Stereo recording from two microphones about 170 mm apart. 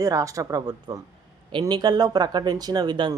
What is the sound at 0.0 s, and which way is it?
Speech, 20° right (ahead or behind).